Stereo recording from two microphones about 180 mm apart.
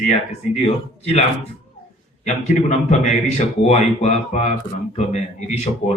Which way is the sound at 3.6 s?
35° left (ahead or behind).